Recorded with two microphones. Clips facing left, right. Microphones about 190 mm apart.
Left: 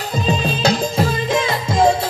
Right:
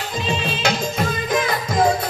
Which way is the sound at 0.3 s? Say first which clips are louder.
Left 4 dB; 40° left (ahead or behind).